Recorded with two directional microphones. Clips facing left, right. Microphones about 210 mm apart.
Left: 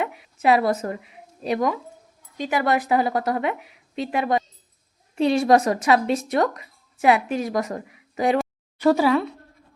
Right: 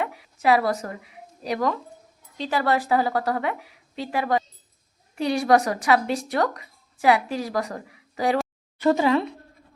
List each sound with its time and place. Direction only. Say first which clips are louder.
0.0 s a woman's voice: left 2 dB; 20° left (ahead or behind)
8.8 s speech: left 2 dB; 5° left (ahead or behind)